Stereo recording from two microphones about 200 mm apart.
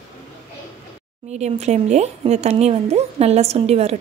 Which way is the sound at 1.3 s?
35° right (ahead or behind).